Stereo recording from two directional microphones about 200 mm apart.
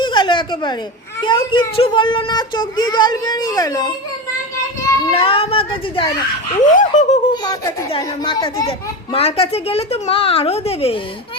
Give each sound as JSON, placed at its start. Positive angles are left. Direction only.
{"t": 0.0, "sound": "a sound", "side_deg": 25}
{"t": 1.2, "sound": "a child's voice", "side_deg": 25}
{"t": 5.1, "sound": "a child's voice", "side_deg": 30}
{"t": 6.6, "sound": "laughter", "side_deg": 40}
{"t": 7.4, "sound": "a child's voice", "side_deg": 20}